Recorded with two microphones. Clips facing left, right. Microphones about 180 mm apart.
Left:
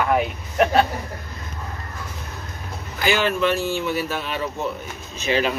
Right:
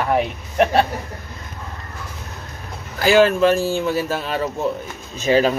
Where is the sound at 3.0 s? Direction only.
40° right (ahead or behind).